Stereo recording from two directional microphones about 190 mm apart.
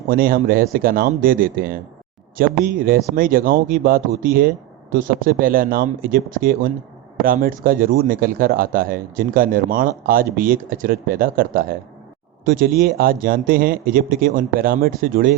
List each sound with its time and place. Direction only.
0.1 s speech: 50° right (ahead or behind)